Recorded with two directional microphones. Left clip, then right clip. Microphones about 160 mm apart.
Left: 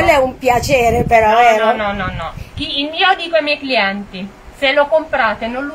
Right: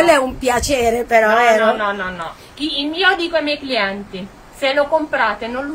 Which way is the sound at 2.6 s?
25° right (ahead or behind).